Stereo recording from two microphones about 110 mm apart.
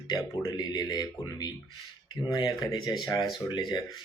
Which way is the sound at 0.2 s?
35° left (ahead or behind).